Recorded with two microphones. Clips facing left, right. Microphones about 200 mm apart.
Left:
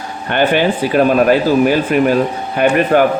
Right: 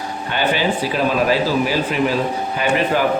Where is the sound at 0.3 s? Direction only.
55° left (ahead or behind).